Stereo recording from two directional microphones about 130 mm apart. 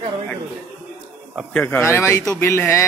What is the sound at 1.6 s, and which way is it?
Speech, 15° left (ahead or behind).